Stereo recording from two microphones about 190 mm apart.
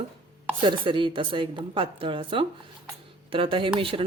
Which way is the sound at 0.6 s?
25° right (ahead or behind).